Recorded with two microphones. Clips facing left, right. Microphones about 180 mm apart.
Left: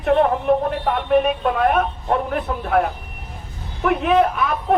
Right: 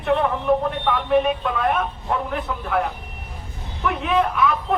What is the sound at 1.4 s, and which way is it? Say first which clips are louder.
Speech: left 4 dB; 45° left (ahead or behind).